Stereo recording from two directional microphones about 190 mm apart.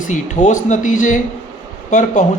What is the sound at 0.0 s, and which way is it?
A man's voice, 40° left (ahead or behind).